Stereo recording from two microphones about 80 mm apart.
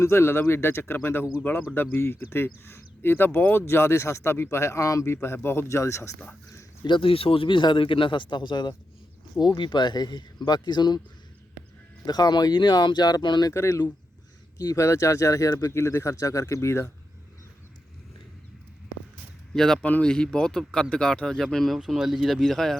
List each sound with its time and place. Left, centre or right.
0.0 s speech: left
6.8 s speech: left
7.4 s speech: left
12.0 s speech: left
13.5 s speech: left
19.5 s speech: centre